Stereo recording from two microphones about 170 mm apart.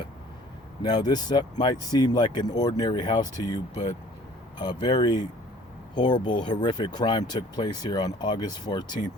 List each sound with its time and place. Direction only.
0.8 s speech: 25° left (ahead or behind)